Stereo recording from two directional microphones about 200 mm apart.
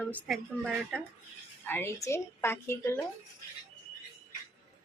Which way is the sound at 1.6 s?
10° left (ahead or behind).